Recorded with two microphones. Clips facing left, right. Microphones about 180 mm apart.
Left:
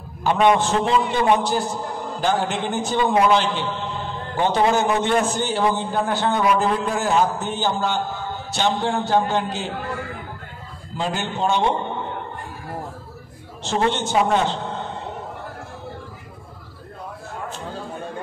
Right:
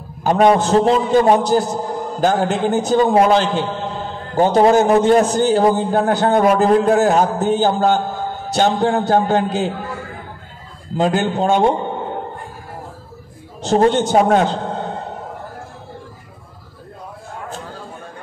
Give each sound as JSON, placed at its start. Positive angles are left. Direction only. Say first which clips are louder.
{"t": 0.2, "sound": "a man's voice", "louder": "right 4 dB", "side_deg": -40}
{"t": 11.0, "sound": "a man's voice", "louder": "right 7 dB", "side_deg": -45}
{"t": 13.7, "sound": "a man's voice", "louder": "right 8 dB", "side_deg": -45}